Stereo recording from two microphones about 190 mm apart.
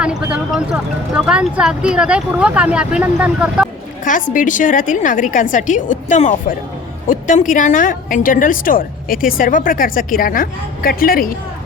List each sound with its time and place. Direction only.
0.0 s speech: 5° right (ahead or behind)
4.0 s a woman's voice: 45° left (ahead or behind)